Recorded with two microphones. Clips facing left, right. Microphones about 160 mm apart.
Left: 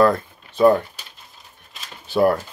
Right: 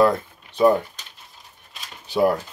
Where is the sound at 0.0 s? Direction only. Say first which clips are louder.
Left 1 dB; 20° right (ahead or behind).